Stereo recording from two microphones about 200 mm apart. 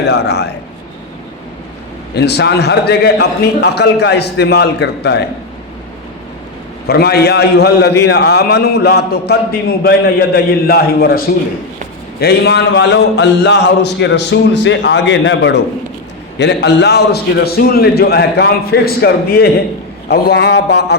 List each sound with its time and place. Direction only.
0.1 s speech: 55° left (ahead or behind)
2.1 s speech: 55° left (ahead or behind)
6.8 s a man's voice: 50° left (ahead or behind)
12.2 s a man's voice: 55° left (ahead or behind)